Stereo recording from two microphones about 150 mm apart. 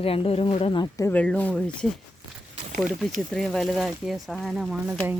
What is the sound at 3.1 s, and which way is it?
Speech, 5° left (ahead or behind).